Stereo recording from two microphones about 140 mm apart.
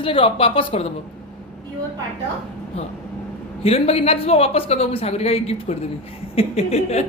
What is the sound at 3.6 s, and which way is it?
Speech, 45° left (ahead or behind).